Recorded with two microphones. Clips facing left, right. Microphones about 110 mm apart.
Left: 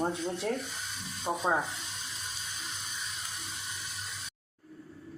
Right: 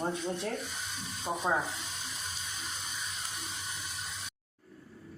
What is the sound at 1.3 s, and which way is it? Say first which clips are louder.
Speech: left 2 dB; 20° left (ahead or behind).